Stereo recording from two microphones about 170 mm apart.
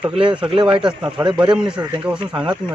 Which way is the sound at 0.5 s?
30° right (ahead or behind).